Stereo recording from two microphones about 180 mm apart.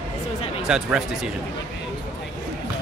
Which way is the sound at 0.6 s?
5° right (ahead or behind).